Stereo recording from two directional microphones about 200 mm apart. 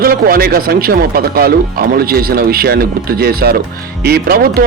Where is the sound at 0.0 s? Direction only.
50° right (ahead or behind).